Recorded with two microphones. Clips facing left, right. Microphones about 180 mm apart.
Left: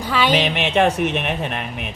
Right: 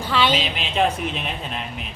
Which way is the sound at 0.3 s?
75° left (ahead or behind).